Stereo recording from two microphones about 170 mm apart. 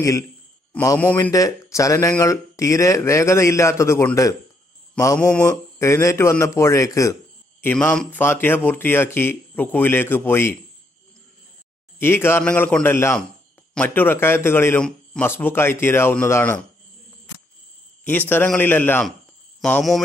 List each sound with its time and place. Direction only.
0.7 s speech: 10° left (ahead or behind)
7.6 s speech: 10° left (ahead or behind)
12.0 s speech: 15° left (ahead or behind)
18.0 s speech: 10° left (ahead or behind)